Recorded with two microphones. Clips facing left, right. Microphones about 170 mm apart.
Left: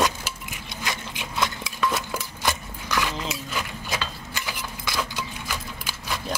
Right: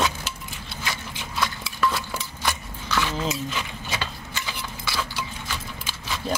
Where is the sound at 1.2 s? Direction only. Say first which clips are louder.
Left 1 dB; 15° left (ahead or behind).